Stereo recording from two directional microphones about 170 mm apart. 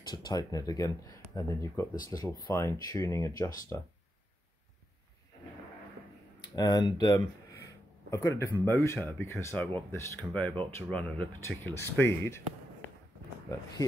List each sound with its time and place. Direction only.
0.0 s speech: 25° left (ahead or behind)
6.5 s speech: 25° left (ahead or behind)
13.5 s speech: 20° left (ahead or behind)